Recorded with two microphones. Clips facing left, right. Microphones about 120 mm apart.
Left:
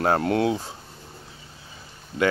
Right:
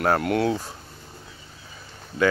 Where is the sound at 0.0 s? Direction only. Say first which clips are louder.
Even; 30° left (ahead or behind).